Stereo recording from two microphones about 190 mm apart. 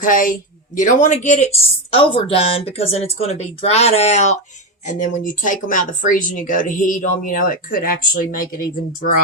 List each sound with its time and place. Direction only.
0.0 s speech: 45° left (ahead or behind)